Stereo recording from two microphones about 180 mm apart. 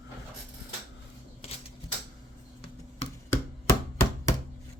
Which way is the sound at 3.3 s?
15° left (ahead or behind).